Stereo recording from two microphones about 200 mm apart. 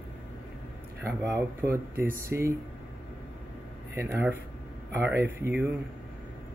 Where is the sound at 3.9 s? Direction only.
10° right (ahead or behind).